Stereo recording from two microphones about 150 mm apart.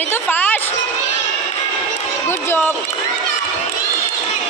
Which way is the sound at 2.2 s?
15° left (ahead or behind).